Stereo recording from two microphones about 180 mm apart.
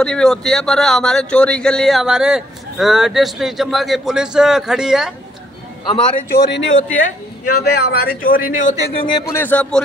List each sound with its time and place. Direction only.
0.0 s a man's voice: 5° left (ahead or behind)
6.3 s speech: 85° left
7.0 s a man's voice: 50° left (ahead or behind)
9.3 s a man's voice: 10° left (ahead or behind)